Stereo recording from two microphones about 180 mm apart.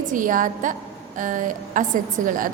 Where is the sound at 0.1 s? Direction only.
50° right (ahead or behind).